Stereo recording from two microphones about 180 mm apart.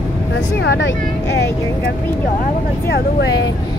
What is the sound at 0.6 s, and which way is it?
Speech, 80° left.